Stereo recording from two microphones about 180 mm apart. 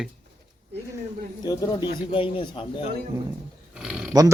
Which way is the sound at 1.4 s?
20° left (ahead or behind).